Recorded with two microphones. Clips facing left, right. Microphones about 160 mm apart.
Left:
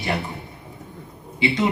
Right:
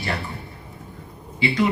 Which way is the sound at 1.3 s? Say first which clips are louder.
Even; 20° left (ahead or behind).